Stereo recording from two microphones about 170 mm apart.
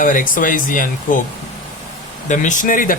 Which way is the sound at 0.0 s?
55° left (ahead or behind).